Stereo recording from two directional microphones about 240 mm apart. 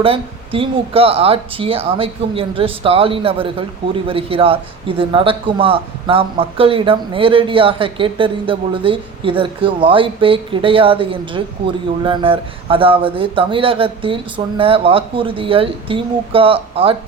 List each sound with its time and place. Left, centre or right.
0.0 s a man's voice: right